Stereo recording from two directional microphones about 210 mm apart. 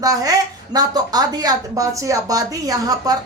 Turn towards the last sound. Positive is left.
turn(degrees=-15)  # may be behind; listen again after turning